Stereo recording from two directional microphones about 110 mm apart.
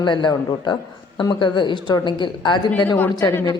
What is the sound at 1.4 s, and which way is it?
Speech, 45° left (ahead or behind).